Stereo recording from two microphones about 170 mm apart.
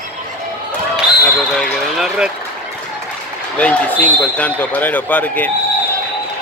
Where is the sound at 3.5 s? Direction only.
10° left (ahead or behind).